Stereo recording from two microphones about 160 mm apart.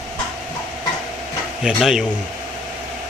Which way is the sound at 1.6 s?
5° right (ahead or behind).